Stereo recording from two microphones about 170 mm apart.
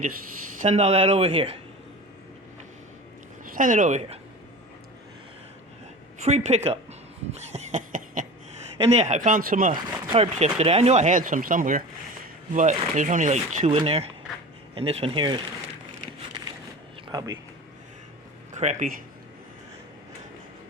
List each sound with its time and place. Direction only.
0.6 s speech: 40° right (ahead or behind)
3.5 s speech: 50° right (ahead or behind)
6.2 s speech: 40° right (ahead or behind)
7.3 s a sound: 40° right (ahead or behind)
8.9 s speech: 45° right (ahead or behind)
10.1 s speech: 35° right (ahead or behind)
17.1 s speech: 25° right (ahead or behind)
18.5 s speech: 45° right (ahead or behind)